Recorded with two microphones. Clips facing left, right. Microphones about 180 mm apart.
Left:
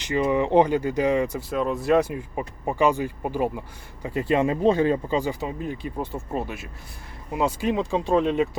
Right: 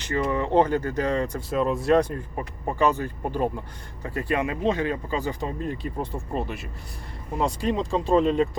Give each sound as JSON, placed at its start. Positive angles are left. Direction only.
{"t": 0.1, "sound": "speech", "side_deg": 15}
{"t": 4.0, "sound": "speech", "side_deg": 20}
{"t": 5.1, "sound": "speech", "side_deg": 10}